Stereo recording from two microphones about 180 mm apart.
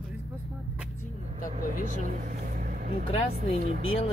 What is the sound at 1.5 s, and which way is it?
Speech, 45° right (ahead or behind).